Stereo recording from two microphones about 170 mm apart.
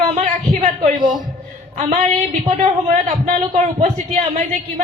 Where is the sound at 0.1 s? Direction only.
40° right (ahead or behind).